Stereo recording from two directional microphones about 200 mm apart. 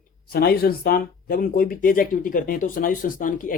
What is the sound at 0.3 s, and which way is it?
Speech, 50° left (ahead or behind).